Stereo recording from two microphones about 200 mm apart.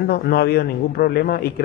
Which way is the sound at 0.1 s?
50° left (ahead or behind).